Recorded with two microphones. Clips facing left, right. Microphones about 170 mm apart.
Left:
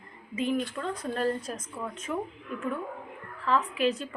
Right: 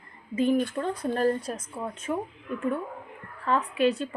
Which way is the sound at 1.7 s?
25° right (ahead or behind).